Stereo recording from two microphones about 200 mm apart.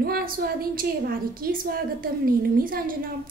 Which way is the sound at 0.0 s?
50° right (ahead or behind).